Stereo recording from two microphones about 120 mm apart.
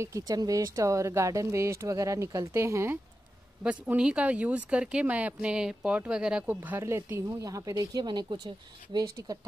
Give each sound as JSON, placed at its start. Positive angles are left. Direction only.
{"t": 0.0, "sound": "speech", "side_deg": -30}
{"t": 3.6, "sound": "speech", "side_deg": -10}